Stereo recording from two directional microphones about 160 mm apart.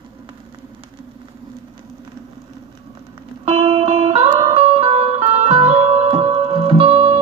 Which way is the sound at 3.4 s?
35° right (ahead or behind).